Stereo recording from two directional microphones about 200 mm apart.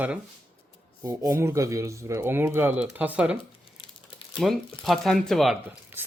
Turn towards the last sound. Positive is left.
turn(degrees=0)  # may be behind; listen again after turning